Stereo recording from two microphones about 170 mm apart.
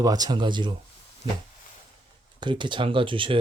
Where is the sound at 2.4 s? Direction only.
30° right (ahead or behind).